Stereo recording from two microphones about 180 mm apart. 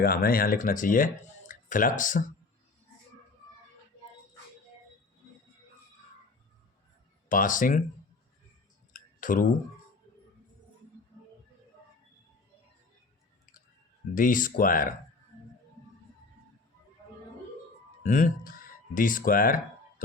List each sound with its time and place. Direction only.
0.0 s speech: 55° left (ahead or behind)
7.3 s speech: 50° left (ahead or behind)
8.9 s clicking: 50° left (ahead or behind)
14.2 s speech: 45° left (ahead or behind)
18.0 s speech: 45° left (ahead or behind)